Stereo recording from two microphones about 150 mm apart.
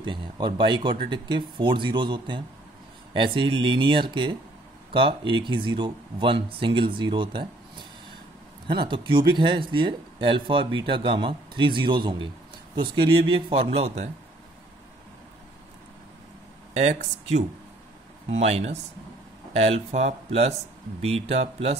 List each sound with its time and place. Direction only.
0.0 s speech: 30° right (ahead or behind)
8.6 s speech: 35° right (ahead or behind)
16.7 s speech: 50° right (ahead or behind)